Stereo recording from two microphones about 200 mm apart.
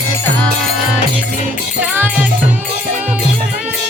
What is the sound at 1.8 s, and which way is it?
Music, 10° right (ahead or behind).